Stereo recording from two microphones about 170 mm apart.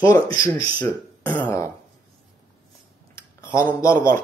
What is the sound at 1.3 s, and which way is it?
Speech, 10° left (ahead or behind).